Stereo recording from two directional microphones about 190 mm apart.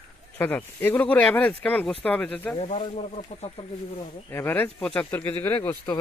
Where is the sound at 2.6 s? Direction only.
35° left (ahead or behind).